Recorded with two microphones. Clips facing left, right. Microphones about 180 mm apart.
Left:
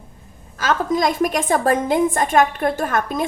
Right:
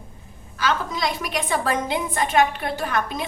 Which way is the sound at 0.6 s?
45° left (ahead or behind).